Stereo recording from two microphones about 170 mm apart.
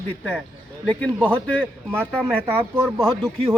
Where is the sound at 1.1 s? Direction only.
10° right (ahead or behind).